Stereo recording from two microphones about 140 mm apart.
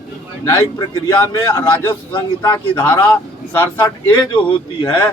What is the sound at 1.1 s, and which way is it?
Speech, 25° left (ahead or behind).